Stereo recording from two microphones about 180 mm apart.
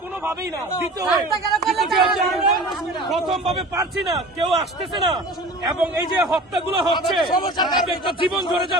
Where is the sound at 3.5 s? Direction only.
20° right (ahead or behind).